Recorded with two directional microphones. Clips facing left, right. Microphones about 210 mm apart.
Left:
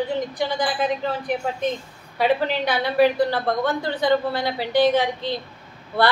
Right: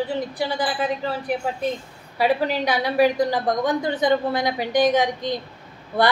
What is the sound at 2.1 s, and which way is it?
A woman's voice, 10° right (ahead or behind).